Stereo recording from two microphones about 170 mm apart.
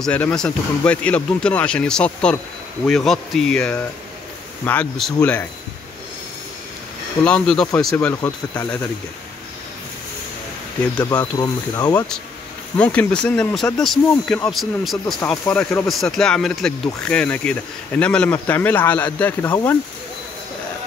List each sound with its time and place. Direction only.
0.0 s speech: 5° left (ahead or behind)
7.2 s speech: 5° left (ahead or behind)
8.1 s speech: 15° left (ahead or behind)
11.0 s speech: 20° left (ahead or behind)
12.7 s speech: 10° left (ahead or behind)